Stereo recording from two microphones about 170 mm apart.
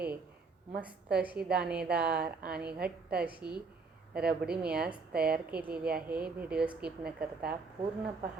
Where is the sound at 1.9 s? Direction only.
70° right (ahead or behind).